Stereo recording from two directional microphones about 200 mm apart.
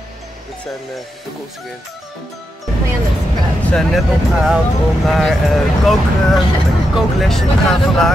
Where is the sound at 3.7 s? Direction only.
Centre (ahead or behind).